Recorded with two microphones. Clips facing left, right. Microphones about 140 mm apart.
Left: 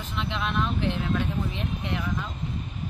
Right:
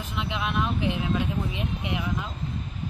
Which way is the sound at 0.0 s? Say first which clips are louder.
Even; 5° right (ahead or behind).